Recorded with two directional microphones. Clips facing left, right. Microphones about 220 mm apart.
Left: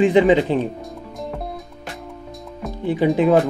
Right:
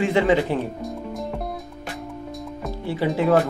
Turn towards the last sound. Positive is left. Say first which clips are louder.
# left 5 dB
turn(degrees=20)  # may be behind; listen again after turning